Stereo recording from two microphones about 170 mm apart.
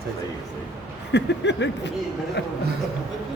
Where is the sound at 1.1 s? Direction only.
90° left.